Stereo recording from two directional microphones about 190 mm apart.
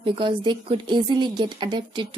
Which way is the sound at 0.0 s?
25° right (ahead or behind).